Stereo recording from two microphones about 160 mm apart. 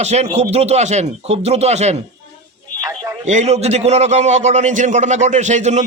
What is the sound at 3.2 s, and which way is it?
A man's voice, 45° right (ahead or behind).